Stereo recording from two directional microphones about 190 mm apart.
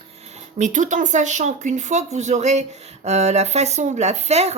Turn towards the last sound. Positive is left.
turn(degrees=-35)  # may be behind; listen again after turning